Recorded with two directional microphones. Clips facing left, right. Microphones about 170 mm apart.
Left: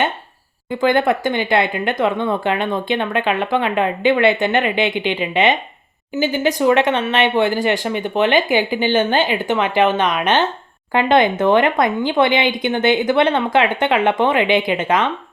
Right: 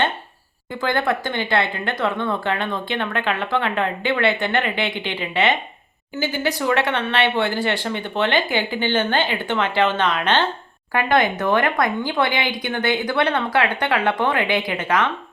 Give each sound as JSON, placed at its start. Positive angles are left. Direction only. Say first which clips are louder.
{"t": 0.8, "sound": "speech", "louder": "left 6 dB", "side_deg": 20}